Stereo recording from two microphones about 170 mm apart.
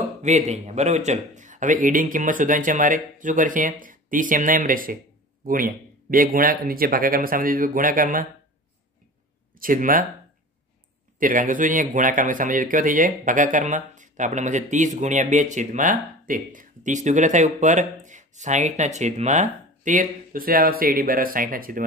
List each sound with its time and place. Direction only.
0.2 s speech: 45° right (ahead or behind)
9.6 s speech: 55° right (ahead or behind)
11.1 s speech: 50° right (ahead or behind)